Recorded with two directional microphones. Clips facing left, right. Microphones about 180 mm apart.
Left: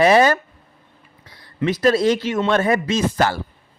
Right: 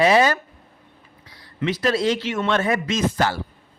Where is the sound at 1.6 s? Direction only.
45° left (ahead or behind).